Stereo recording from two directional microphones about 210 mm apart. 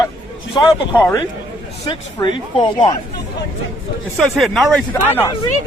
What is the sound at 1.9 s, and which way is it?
Speech, 20° left (ahead or behind).